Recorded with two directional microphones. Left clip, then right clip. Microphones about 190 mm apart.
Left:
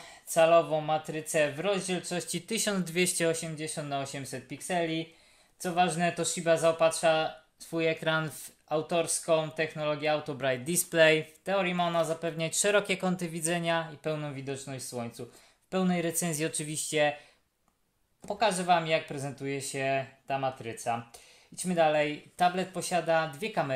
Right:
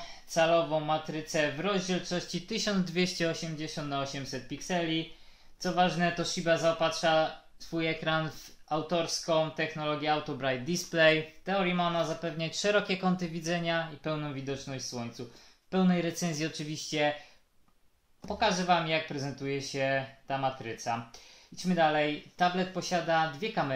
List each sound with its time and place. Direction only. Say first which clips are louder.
0.3 s speech: left 3 dB; 45° left (ahead or behind)
18.2 s speech: left 1 dB; 40° left (ahead or behind)